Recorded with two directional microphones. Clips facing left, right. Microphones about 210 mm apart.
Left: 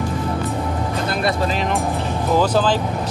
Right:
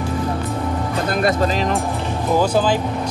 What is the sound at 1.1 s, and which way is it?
Speech, 45° right (ahead or behind).